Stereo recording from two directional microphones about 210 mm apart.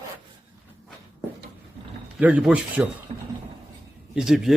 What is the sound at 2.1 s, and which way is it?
Speech, 5° right (ahead or behind).